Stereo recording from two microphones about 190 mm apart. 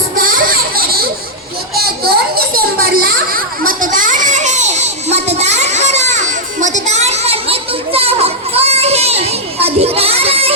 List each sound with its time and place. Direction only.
0.2 s children playing: 50° right (ahead or behind); by 10.5 s 30° right (ahead or behind)